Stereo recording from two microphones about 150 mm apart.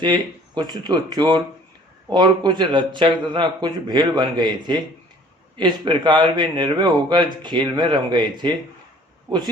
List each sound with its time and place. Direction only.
0.0 s speech: 30° right (ahead or behind)